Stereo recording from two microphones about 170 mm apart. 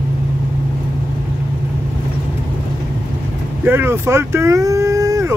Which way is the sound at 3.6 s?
10° right (ahead or behind).